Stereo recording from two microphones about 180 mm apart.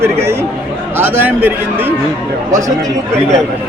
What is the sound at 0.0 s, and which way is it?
A man's voice, 15° right (ahead or behind).